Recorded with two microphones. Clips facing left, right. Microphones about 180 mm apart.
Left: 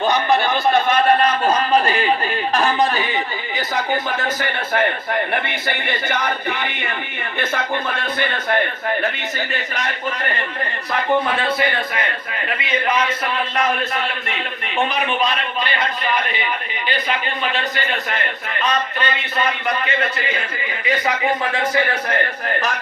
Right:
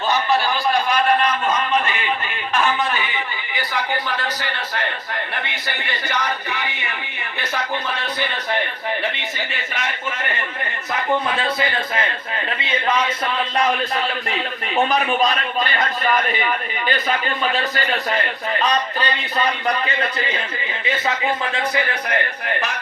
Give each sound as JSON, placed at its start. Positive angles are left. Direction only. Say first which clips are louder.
{"t": 0.1, "sound": "a sound", "louder": "right 1 dB", "side_deg": 20}
{"t": 4.2, "sound": "a man's voice", "louder": "left 3 dB", "side_deg": 50}
{"t": 13.6, "sound": "a man's voice", "louder": "right 1 dB", "side_deg": -35}